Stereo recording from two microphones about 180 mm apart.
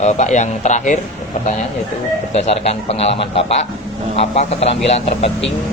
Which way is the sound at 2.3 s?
35° left (ahead or behind).